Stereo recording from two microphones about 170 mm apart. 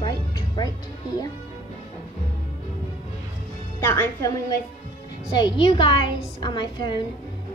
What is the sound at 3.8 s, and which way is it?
Speech, 15° left (ahead or behind).